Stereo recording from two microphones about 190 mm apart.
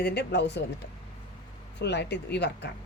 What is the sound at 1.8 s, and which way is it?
Speech, 60° left (ahead or behind).